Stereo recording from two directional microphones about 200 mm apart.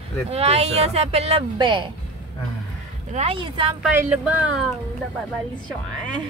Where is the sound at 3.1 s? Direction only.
25° right (ahead or behind).